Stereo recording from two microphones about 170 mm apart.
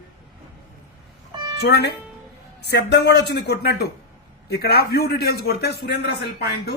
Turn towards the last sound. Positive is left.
turn(degrees=70)  # may be behind; listen again after turning